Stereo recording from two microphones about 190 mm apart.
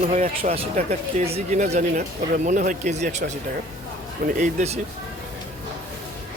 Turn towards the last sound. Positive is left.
turn(degrees=-40)  # may be behind; listen again after turning